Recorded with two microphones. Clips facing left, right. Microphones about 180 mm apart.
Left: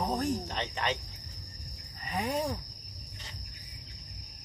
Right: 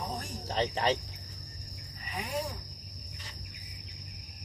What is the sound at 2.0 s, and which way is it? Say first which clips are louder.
Speech: left 7 dB; 40° left (ahead or behind).